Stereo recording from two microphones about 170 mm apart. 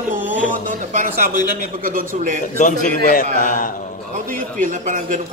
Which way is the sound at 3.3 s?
55° left (ahead or behind).